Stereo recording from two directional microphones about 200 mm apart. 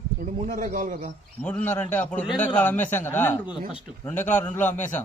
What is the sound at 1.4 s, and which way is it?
A man's voice, 5° left (ahead or behind).